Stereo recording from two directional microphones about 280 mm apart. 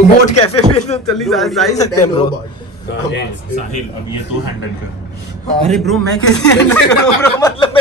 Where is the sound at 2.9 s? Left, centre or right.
Left.